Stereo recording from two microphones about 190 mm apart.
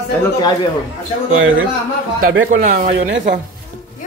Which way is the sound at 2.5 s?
45° right (ahead or behind).